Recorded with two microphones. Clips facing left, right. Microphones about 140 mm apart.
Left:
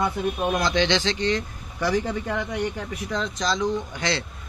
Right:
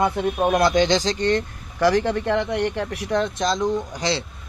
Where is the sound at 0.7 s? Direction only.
45° right (ahead or behind).